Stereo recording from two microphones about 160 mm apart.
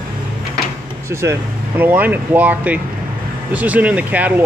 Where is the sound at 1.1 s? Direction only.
15° right (ahead or behind).